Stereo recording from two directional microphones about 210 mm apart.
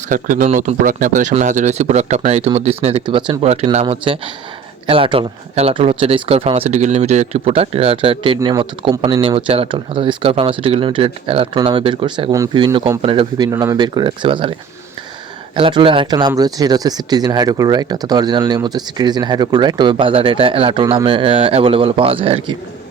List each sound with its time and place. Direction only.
0.1 s speech: 40° right (ahead or behind)
15.5 s speech: 25° right (ahead or behind)